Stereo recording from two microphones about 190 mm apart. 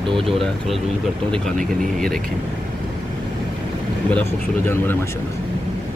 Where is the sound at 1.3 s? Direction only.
5° left (ahead or behind).